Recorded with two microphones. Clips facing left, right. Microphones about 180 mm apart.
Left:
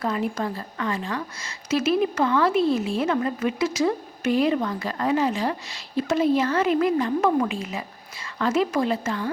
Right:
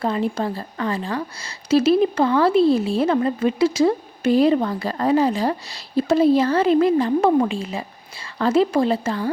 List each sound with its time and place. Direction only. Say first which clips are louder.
0.0 s a woman's voice: right 4 dB; 30° right (ahead or behind)